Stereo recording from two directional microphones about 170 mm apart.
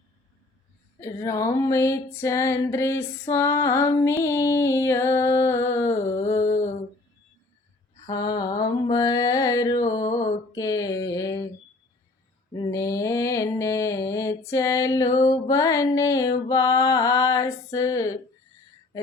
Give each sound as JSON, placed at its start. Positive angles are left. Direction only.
{"t": 0.9, "sound": "music", "side_deg": 15}
{"t": 6.4, "sound": "a sound", "side_deg": 45}
{"t": 8.0, "sound": "mantra", "side_deg": 20}
{"t": 12.5, "sound": "mantra", "side_deg": 20}
{"t": 16.5, "sound": "music", "side_deg": 20}